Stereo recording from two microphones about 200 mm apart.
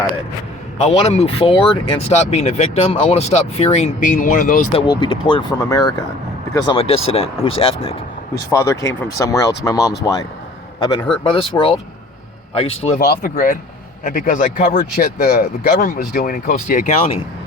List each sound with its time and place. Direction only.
0.8 s speech: 30° left (ahead or behind)
4.7 s speech: 25° left (ahead or behind)
8.4 s speech: 15° left (ahead or behind)
12.8 s speech: 35° left (ahead or behind)